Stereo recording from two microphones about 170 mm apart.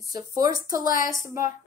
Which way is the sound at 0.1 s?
20° right (ahead or behind).